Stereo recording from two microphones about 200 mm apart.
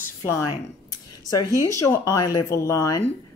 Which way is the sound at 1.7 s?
15° left (ahead or behind).